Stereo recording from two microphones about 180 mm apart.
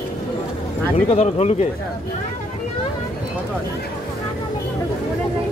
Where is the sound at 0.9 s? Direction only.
35° left (ahead or behind).